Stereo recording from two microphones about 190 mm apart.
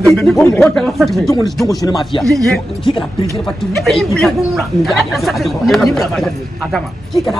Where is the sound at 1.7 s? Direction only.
20° left (ahead or behind).